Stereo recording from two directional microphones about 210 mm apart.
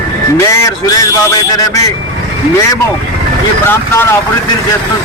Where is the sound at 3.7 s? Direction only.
10° left (ahead or behind).